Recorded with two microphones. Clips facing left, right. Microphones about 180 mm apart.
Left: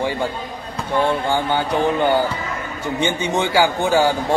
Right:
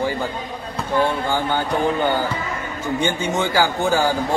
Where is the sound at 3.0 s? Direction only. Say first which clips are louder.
Left 2 dB; 15° left (ahead or behind).